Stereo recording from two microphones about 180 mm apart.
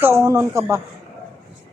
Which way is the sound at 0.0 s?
15° right (ahead or behind).